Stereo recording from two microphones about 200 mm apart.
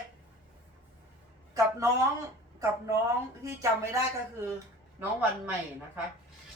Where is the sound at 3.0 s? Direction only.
15° right (ahead or behind).